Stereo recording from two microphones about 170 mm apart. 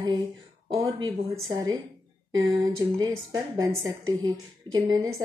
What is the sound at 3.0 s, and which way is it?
A woman's voice, 20° right (ahead or behind).